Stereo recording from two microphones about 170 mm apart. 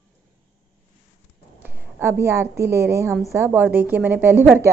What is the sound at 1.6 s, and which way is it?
A woman's voice, 10° right (ahead or behind).